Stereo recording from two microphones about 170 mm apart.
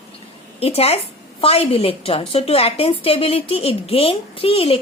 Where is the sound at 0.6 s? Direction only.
35° left (ahead or behind).